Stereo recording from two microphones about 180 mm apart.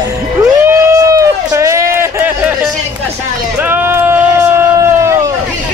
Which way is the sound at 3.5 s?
10° right (ahead or behind).